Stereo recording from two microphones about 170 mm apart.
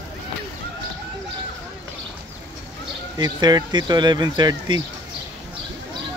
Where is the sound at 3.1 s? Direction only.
25° right (ahead or behind).